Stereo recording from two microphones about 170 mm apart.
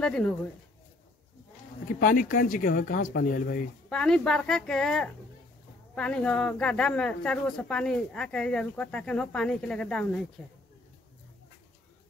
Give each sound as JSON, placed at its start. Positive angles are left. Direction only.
{"t": 0.0, "sound": "a woman's voice", "side_deg": 5}
{"t": 2.0, "sound": "speech", "side_deg": 50}
{"t": 3.9, "sound": "a woman's voice", "side_deg": 5}